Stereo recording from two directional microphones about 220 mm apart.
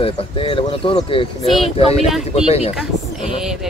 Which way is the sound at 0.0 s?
25° left (ahead or behind).